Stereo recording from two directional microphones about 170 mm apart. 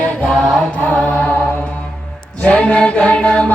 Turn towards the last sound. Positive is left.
turn(degrees=5)  # may be behind; listen again after turning